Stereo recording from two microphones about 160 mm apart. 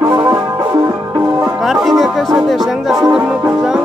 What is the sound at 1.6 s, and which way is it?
Music, centre (ahead or behind).